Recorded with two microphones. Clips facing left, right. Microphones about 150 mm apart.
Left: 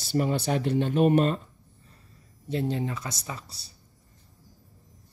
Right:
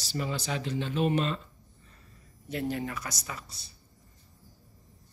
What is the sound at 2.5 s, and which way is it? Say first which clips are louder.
Speech: left 3 dB; 25° left (ahead or behind).